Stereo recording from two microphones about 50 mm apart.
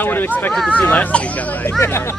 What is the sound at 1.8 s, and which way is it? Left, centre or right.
Speech, left.